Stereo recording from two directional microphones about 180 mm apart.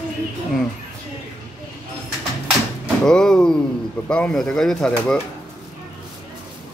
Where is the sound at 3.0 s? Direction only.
5° left (ahead or behind).